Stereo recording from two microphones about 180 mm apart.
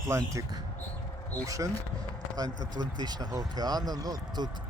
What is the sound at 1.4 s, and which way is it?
Speech, 20° right (ahead or behind).